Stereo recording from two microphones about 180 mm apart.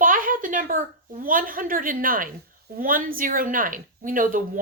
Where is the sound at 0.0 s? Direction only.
50° right (ahead or behind).